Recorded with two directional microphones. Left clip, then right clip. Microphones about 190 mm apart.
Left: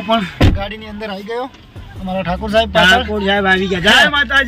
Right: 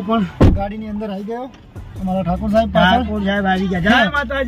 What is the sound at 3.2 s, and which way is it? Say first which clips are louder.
Speech: left 5 dB; 15° left (ahead or behind).